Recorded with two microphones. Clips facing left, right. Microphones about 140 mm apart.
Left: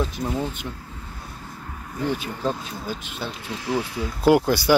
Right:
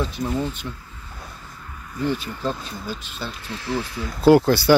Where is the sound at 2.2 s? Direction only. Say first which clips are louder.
Left 1 dB; 10° left (ahead or behind).